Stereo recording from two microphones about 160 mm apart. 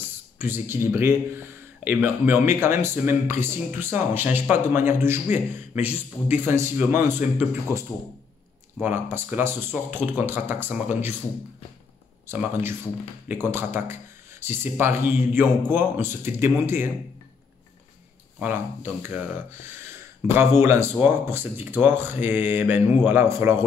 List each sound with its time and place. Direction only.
0.4 s speech: 15° right (ahead or behind)
8.8 s speech: 15° right (ahead or behind)
12.3 s speech: 15° right (ahead or behind)
18.4 s speech: 15° right (ahead or behind)